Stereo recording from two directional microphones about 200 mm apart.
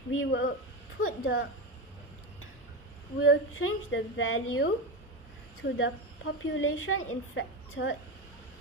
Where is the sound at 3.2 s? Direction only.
90° left.